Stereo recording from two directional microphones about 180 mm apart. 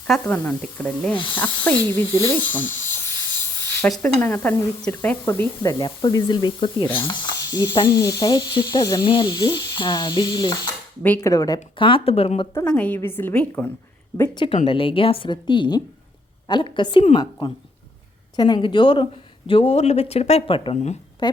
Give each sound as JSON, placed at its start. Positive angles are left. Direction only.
{"t": 0.1, "sound": "speech", "side_deg": 10}
{"t": 5.8, "sound": "snake", "side_deg": 25}
{"t": 7.1, "sound": "sizzle", "side_deg": 25}
{"t": 7.9, "sound": "snake", "side_deg": 20}
{"t": 11.0, "sound": "snake", "side_deg": 15}
{"t": 12.6, "sound": "speech", "side_deg": 5}
{"t": 14.3, "sound": "snake", "side_deg": 30}
{"t": 18.3, "sound": "snake", "side_deg": 25}
{"t": 19.5, "sound": "speech", "side_deg": 35}